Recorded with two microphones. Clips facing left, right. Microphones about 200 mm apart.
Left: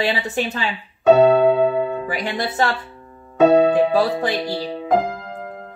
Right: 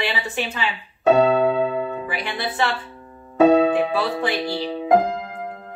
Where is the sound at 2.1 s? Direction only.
45° left (ahead or behind).